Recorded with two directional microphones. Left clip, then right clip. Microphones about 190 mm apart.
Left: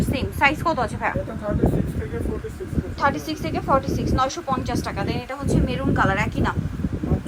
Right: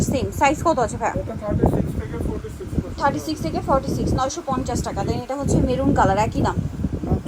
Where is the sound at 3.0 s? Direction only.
15° right (ahead or behind).